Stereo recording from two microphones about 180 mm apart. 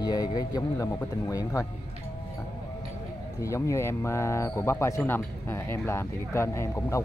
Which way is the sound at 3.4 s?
15° left (ahead or behind).